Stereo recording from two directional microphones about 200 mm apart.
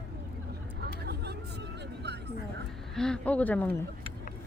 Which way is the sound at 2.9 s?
5° left (ahead or behind).